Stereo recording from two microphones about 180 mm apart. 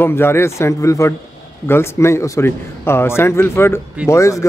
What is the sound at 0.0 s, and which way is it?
A man's voice, 15° left (ahead or behind).